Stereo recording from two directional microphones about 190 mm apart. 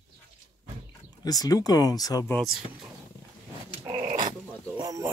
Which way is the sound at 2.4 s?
Centre (ahead or behind).